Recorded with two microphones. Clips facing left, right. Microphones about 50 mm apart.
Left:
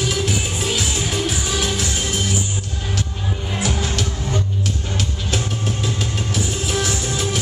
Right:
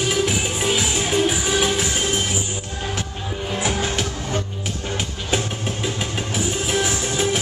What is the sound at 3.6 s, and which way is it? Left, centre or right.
Music, centre.